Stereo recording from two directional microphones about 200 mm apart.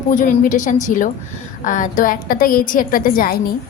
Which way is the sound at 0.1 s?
40° left (ahead or behind).